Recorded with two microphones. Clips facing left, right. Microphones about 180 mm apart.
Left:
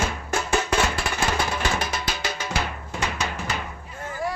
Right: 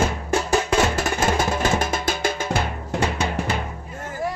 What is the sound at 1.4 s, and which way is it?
Music, 45° right (ahead or behind).